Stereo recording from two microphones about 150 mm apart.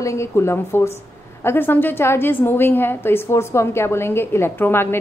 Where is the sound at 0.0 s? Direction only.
20° left (ahead or behind).